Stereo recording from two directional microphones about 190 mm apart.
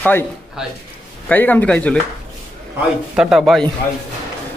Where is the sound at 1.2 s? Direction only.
10° left (ahead or behind).